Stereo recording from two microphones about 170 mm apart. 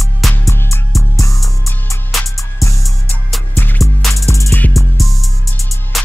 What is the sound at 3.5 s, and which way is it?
Music, 15° left (ahead or behind).